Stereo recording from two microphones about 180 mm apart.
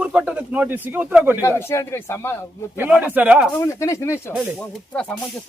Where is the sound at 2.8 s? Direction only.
10° right (ahead or behind).